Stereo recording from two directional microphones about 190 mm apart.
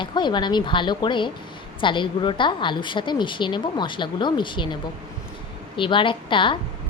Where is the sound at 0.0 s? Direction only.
25° left (ahead or behind).